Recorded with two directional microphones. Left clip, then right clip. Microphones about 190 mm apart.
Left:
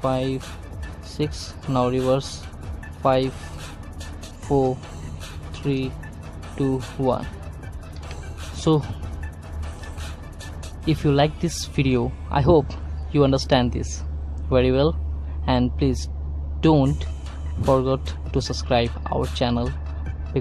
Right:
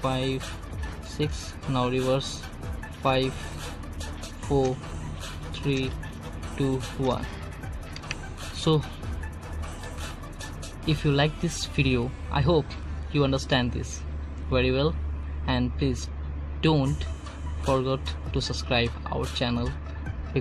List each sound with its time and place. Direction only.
0.0 s speech: 5° left (ahead or behind)
4.5 s speech: 5° left (ahead or behind)
5.5 s liquid: 10° left (ahead or behind)
6.6 s speech: 10° left (ahead or behind)
8.7 s speech: 10° left (ahead or behind)
10.9 s speech: 10° left (ahead or behind)